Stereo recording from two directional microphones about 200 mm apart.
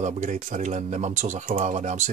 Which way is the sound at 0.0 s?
40° right (ahead or behind).